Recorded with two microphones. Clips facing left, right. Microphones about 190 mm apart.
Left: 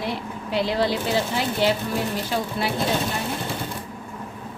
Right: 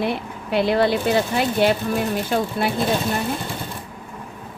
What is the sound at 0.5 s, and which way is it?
A woman's voice, 55° right (ahead or behind).